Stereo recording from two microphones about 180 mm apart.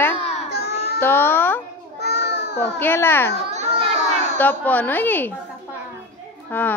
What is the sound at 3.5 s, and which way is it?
Children playing, 35° right (ahead or behind).